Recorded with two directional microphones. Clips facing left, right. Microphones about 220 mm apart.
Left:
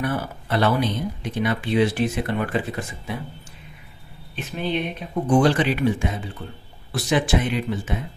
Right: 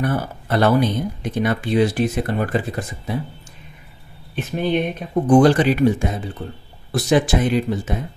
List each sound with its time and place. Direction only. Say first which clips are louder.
0.0 s speech: right 3 dB; 45° right (ahead or behind)
4.5 s speech: right 5 dB; 45° right (ahead or behind)